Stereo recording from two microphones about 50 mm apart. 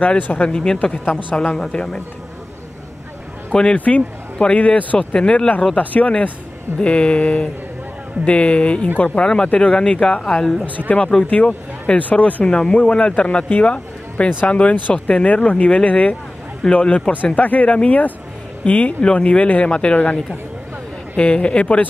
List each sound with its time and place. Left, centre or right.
0.2 s a man's voice: left
3.5 s a man's voice: centre; by 9.2 s left
9.2 s speech: centre
11.2 s a man's voice: left
21.2 s a man's voice: left